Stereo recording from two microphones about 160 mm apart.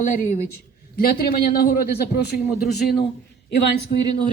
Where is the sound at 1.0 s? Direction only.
65° left (ahead or behind); by 3.7 s 90° left.